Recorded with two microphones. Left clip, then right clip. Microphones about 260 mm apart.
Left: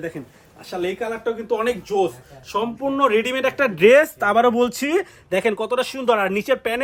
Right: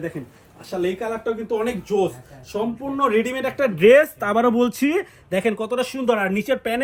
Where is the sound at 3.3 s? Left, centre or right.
Left.